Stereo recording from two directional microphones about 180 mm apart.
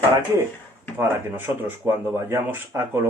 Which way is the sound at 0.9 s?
10° right (ahead or behind).